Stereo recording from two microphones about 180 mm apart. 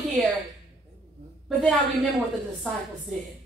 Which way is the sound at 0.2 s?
5° left (ahead or behind).